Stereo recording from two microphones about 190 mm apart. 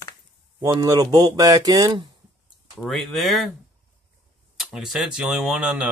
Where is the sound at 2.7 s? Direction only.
Centre (ahead or behind).